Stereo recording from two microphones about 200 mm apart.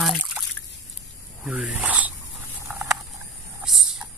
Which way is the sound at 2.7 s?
5° right (ahead or behind).